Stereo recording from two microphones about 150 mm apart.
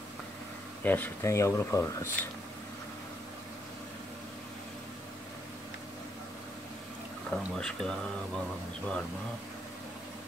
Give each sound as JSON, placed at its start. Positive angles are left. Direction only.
{"t": 0.8, "sound": "speech", "side_deg": 10}
{"t": 7.2, "sound": "speech", "side_deg": 5}